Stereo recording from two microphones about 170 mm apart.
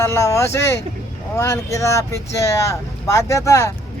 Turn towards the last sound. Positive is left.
turn(degrees=15)  # may be behind; listen again after turning